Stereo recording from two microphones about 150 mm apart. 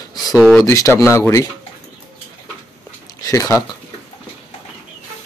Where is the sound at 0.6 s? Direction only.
20° left (ahead or behind).